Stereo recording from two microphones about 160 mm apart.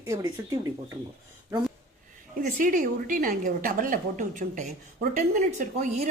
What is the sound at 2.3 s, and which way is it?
A woman's voice, 60° right (ahead or behind).